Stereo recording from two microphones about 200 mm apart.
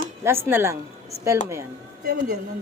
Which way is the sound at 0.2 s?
10° right (ahead or behind).